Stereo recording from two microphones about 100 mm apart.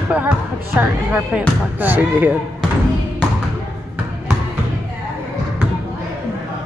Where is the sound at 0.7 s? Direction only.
15° right (ahead or behind).